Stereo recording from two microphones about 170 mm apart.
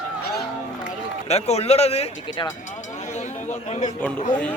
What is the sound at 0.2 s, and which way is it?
Music, 70° left (ahead or behind).